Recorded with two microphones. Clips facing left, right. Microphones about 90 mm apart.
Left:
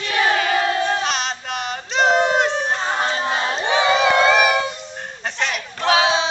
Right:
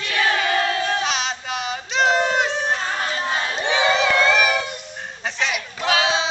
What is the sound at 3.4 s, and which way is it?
Crowd, 30° left (ahead or behind).